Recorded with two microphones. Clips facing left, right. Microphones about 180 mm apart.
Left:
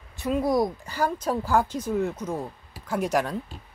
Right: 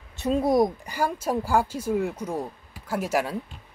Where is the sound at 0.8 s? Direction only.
10° right (ahead or behind).